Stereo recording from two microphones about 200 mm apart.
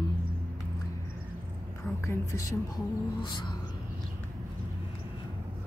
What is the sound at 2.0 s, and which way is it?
A woman's voice, 15° left (ahead or behind).